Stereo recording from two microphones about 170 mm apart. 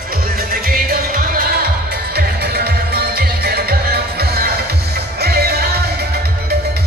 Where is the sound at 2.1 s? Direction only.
70° right (ahead or behind).